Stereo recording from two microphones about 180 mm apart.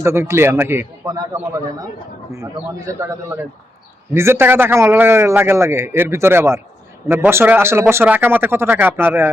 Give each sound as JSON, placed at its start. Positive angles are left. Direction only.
{"t": 0.0, "sound": "a man's voice", "side_deg": -15}